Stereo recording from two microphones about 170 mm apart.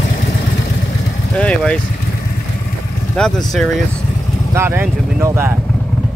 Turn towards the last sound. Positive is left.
turn(degrees=-15)  # may be behind; listen again after turning